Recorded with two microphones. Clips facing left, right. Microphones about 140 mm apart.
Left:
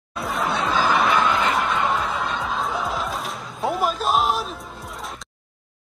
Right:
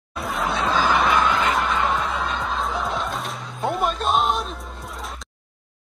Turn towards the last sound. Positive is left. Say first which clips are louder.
# even
turn(degrees=0)  # may be behind; listen again after turning